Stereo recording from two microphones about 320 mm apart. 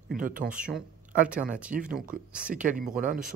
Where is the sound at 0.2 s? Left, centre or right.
Right.